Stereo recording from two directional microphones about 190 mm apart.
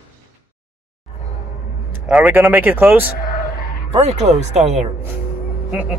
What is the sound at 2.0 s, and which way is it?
Speech, 5° right (ahead or behind).